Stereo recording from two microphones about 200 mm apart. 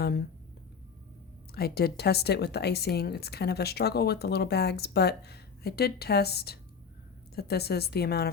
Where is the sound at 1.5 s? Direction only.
50° left (ahead or behind).